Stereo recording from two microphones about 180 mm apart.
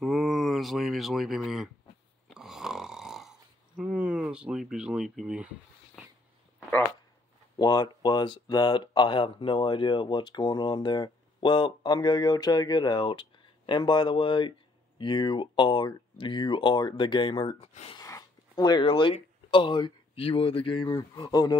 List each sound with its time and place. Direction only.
0.0 s a sound: centre (ahead or behind)
2.2 s snoring: centre (ahead or behind)
7.5 s speech: 20° left (ahead or behind)
17.9 s speech: 20° left (ahead or behind)